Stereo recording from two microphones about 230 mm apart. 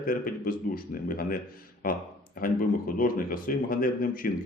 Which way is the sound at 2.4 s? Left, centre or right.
Left.